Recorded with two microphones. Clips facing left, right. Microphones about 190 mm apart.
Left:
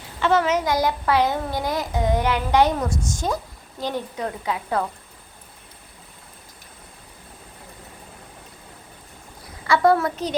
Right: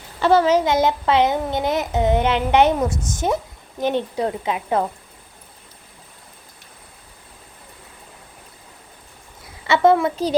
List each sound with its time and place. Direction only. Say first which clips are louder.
0.2 s a child's voice: right 4 dB; 35° right (ahead or behind)
9.6 s a child's voice: right 2 dB; 20° right (ahead or behind)